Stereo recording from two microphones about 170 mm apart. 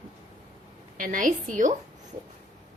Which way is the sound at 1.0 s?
50° right (ahead or behind).